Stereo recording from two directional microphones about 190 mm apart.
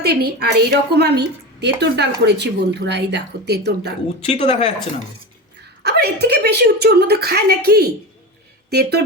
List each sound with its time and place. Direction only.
0.0 s a woman's voice: 60° right (ahead or behind)
4.2 s speech: 35° left (ahead or behind)
5.8 s a woman's voice: 60° right (ahead or behind)